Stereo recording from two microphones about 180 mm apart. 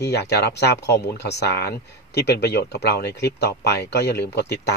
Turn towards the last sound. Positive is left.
turn(degrees=65)  # may be behind; listen again after turning